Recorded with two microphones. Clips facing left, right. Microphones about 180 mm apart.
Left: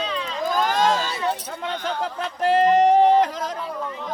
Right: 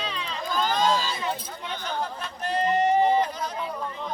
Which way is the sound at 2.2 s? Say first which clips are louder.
Left 12 dB; 90° left.